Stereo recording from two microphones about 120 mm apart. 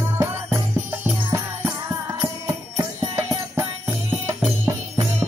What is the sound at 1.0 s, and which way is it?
Music, 20° right (ahead or behind).